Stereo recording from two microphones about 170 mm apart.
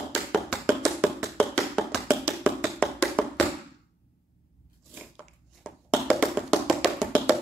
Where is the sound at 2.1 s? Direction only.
15° right (ahead or behind).